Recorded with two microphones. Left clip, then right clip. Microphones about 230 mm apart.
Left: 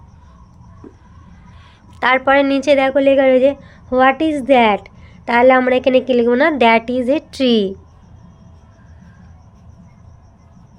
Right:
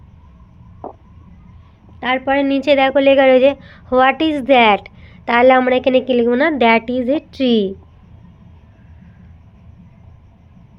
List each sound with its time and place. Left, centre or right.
2.0 s a woman's voice: left
2.6 s a woman's voice: centre